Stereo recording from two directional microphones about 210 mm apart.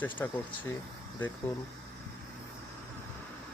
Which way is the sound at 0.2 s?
10° left (ahead or behind).